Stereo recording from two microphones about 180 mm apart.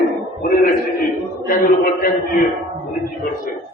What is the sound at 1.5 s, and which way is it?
Speech, 50° left (ahead or behind).